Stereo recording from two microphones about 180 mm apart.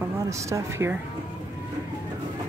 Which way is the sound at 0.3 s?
15° right (ahead or behind).